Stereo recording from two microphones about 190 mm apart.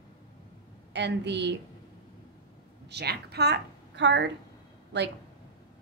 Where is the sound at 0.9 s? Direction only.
65° right (ahead or behind).